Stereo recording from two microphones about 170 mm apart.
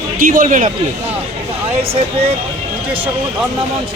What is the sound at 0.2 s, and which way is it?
Speech, 55° right (ahead or behind).